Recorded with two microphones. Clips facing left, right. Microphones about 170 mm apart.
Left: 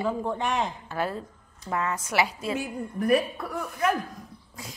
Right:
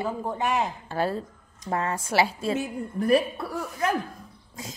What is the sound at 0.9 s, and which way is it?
A woman's voice, 30° right (ahead or behind).